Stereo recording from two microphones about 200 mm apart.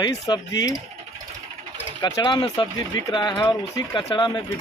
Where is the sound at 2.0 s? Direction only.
20° left (ahead or behind).